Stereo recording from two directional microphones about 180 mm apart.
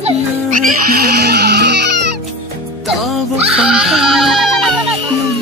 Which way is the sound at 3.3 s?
35° right (ahead or behind).